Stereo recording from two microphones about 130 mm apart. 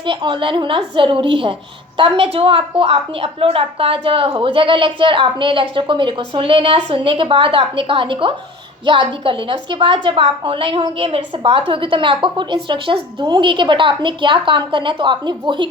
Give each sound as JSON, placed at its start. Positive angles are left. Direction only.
{"t": 0.0, "sound": "a woman's voice", "side_deg": -40}